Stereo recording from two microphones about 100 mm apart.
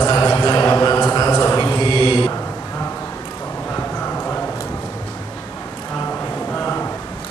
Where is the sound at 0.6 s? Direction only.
20° left (ahead or behind).